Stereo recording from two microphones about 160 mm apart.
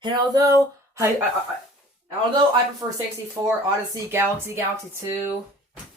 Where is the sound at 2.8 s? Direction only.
20° right (ahead or behind).